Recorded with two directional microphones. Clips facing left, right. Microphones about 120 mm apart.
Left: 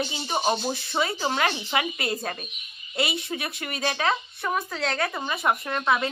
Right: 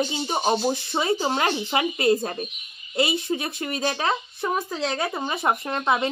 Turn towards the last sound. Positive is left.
turn(degrees=-20)  # may be behind; listen again after turning